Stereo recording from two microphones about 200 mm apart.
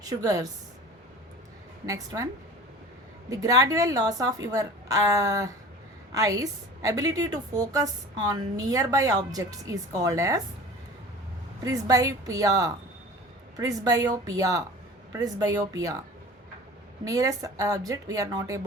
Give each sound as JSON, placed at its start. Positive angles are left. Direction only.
{"t": 0.0, "sound": "a woman's voice", "side_deg": -20}
{"t": 1.9, "sound": "a woman's voice", "side_deg": -15}
{"t": 3.2, "sound": "a woman's voice", "side_deg": -15}
{"t": 11.6, "sound": "a woman's voice", "side_deg": -15}
{"t": 17.1, "sound": "a woman's voice", "side_deg": -15}